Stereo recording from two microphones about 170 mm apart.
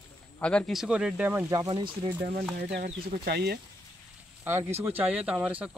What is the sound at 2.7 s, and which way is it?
Speech, 65° right (ahead or behind).